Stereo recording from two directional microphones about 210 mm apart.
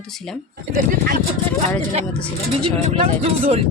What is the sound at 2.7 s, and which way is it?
Speech, 30° right (ahead or behind).